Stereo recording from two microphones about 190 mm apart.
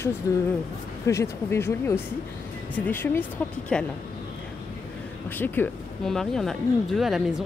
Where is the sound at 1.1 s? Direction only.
15° left (ahead or behind).